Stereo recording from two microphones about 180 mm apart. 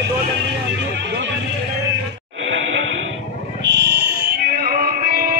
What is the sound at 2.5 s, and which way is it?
Music, 90° right.